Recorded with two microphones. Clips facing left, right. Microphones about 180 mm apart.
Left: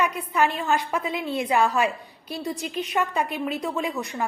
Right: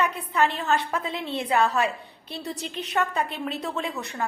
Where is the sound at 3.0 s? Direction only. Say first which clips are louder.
Even; 15° left (ahead or behind).